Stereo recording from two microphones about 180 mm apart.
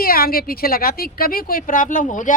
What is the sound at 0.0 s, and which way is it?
A woman's voice, 55° left (ahead or behind).